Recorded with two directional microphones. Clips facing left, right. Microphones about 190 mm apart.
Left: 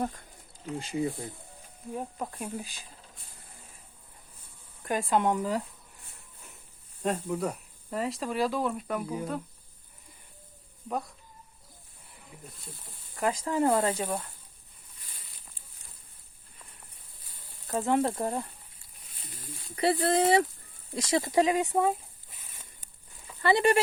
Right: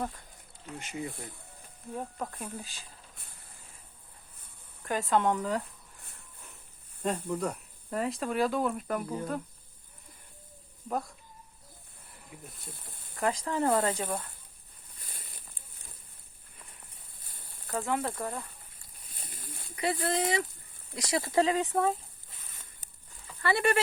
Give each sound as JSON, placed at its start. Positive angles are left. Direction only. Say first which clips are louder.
{"t": 0.8, "sound": "speech", "louder": "left 7 dB", "side_deg": 30}
{"t": 2.0, "sound": "speech", "louder": "left 1 dB", "side_deg": 10}
{"t": 4.9, "sound": "speech", "louder": "left 1 dB", "side_deg": 15}
{"t": 7.0, "sound": "speech", "louder": "left 1 dB", "side_deg": 0}
{"t": 13.1, "sound": "speech", "louder": "left 2 dB", "side_deg": 15}
{"t": 17.7, "sound": "speech", "louder": "left 5 dB", "side_deg": 25}
{"t": 19.7, "sound": "speech", "louder": "left 5 dB", "side_deg": 35}
{"t": 23.4, "sound": "speech", "louder": "left 4 dB", "side_deg": 20}